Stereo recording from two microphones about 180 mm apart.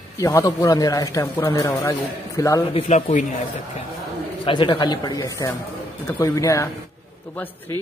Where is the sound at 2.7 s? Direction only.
35° left (ahead or behind).